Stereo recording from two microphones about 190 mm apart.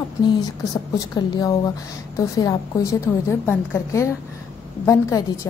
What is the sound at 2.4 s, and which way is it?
A woman's voice, 20° left (ahead or behind).